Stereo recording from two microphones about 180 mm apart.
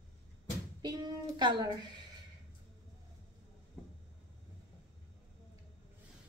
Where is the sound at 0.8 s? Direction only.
25° right (ahead or behind).